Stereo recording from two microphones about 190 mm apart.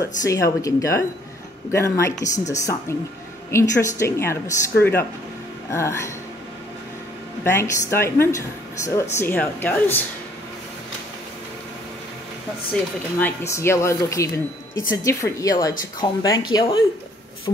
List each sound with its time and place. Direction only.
0.2 s speech: 15° left (ahead or behind)
2.1 s speech: 40° left (ahead or behind)
2.6 s speech: 15° left (ahead or behind)
7.4 s speech: 15° left (ahead or behind)
13.2 s speech: 15° left (ahead or behind)